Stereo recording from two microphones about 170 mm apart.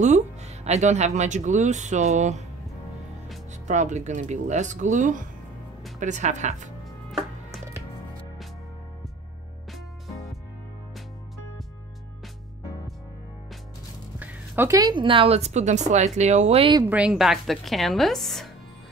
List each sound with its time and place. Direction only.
0.0 s speech: 40° right (ahead or behind)
3.6 s speech: 45° right (ahead or behind)
14.2 s speech: 10° right (ahead or behind); by 16.8 s 35° right (ahead or behind)
16.9 s a woman's voice: 5° right (ahead or behind)